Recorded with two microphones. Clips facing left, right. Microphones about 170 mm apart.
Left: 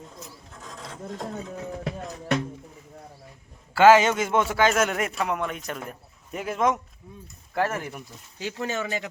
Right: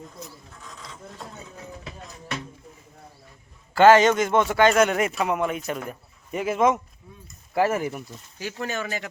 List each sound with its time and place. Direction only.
1.7 s a sound: 60° left (ahead or behind)
3.8 s a man's voice: 5° left (ahead or behind)
8.6 s speech: 25° left (ahead or behind)